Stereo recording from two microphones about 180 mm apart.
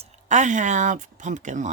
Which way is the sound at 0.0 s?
40° right (ahead or behind).